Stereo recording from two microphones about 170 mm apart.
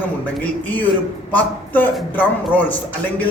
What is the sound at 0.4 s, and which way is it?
A man's voice, 10° left (ahead or behind).